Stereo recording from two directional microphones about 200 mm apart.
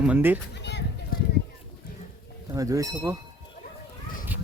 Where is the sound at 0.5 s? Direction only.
60° left (ahead or behind).